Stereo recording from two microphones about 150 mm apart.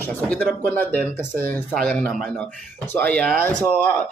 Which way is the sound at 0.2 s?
10° left (ahead or behind).